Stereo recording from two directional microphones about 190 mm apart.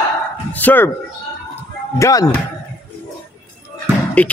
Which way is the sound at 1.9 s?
15° left (ahead or behind).